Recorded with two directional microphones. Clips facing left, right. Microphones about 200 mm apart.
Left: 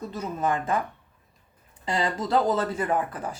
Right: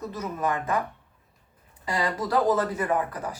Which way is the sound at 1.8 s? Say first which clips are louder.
Left 1 dB; 25° left (ahead or behind).